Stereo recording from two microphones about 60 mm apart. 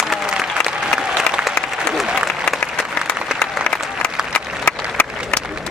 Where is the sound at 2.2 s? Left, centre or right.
Centre.